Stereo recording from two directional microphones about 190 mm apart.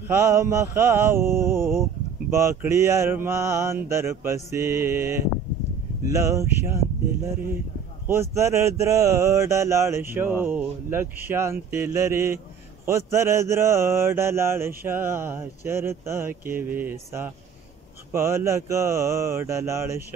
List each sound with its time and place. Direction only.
0.1 s mantra: 15° right (ahead or behind)
8.1 s mantra: 15° right (ahead or behind)